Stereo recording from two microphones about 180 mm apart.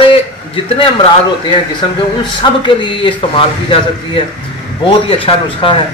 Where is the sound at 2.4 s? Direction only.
25° left (ahead or behind).